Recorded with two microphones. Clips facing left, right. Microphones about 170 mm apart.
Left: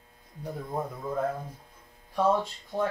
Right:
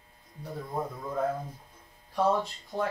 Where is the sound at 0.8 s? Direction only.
10° left (ahead or behind).